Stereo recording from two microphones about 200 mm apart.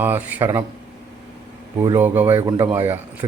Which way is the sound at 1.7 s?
15° right (ahead or behind).